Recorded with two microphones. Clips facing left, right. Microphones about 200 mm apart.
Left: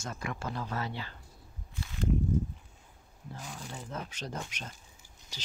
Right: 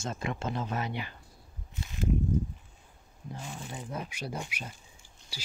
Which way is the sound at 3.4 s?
5° right (ahead or behind).